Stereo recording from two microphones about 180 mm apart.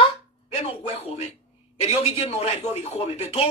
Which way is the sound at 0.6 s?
35° left (ahead or behind).